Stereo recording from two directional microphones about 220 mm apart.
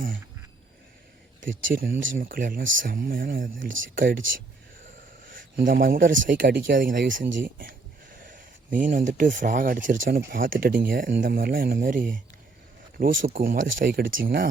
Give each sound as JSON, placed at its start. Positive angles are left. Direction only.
{"t": 1.4, "sound": "speech", "side_deg": -60}
{"t": 2.2, "sound": "speech", "side_deg": -40}
{"t": 3.7, "sound": "speech", "side_deg": -60}
{"t": 3.9, "sound": "speech", "side_deg": -40}
{"t": 5.2, "sound": "speech", "side_deg": -40}
{"t": 7.2, "sound": "speech", "side_deg": -55}
{"t": 7.4, "sound": "speech", "side_deg": -40}